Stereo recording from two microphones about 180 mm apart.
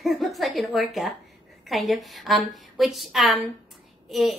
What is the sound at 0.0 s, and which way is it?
A woman's voice, centre (ahead or behind).